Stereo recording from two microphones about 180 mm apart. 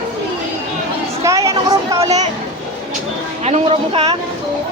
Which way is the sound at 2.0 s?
40° right (ahead or behind).